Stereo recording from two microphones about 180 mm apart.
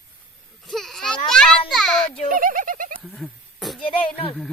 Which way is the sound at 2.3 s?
50° right (ahead or behind).